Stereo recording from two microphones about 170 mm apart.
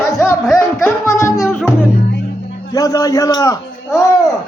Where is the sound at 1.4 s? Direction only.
5° left (ahead or behind).